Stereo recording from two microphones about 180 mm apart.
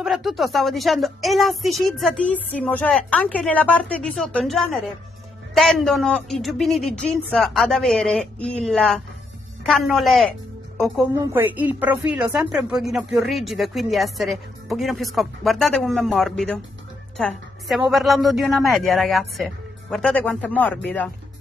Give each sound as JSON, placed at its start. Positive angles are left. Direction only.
{"t": 0.0, "sound": "a woman's voice", "side_deg": 0}
{"t": 11.1, "sound": "a woman's voice", "side_deg": -10}